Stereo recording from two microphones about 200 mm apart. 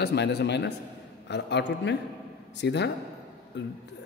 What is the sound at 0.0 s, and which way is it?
A man's voice, 55° left (ahead or behind).